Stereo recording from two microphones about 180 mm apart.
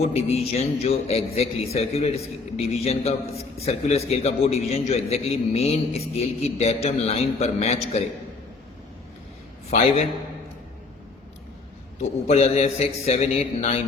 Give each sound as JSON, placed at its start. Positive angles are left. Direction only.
{"t": 0.0, "sound": "a man's voice", "side_deg": 35}
{"t": 9.6, "sound": "a man's voice", "side_deg": 35}
{"t": 12.3, "sound": "a man's voice", "side_deg": 35}